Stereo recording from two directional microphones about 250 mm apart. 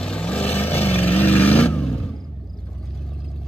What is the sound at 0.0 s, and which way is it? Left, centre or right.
Vehicle, centre.